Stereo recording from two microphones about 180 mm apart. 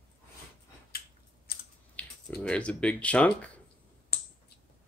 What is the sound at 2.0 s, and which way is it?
Typing, 10° left (ahead or behind).